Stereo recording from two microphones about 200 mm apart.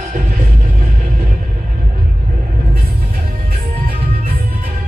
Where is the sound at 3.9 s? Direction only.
45° right (ahead or behind).